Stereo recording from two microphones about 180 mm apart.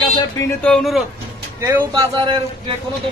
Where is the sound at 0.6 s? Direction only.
Centre (ahead or behind).